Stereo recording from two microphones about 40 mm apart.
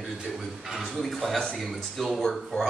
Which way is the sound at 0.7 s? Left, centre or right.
Centre.